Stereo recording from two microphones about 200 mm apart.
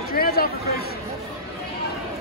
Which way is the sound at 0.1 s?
50° left (ahead or behind).